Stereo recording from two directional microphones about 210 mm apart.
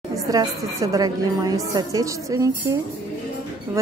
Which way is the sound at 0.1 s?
15° right (ahead or behind).